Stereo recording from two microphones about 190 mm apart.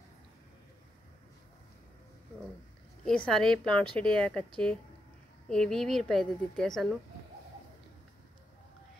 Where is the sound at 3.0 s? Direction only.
5° left (ahead or behind).